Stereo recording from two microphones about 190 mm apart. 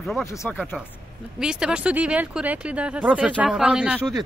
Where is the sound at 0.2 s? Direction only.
15° left (ahead or behind).